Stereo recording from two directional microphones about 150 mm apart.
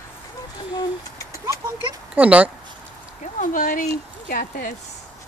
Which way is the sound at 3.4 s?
65° left (ahead or behind).